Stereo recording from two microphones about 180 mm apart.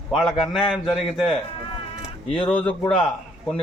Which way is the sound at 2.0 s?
30° left (ahead or behind).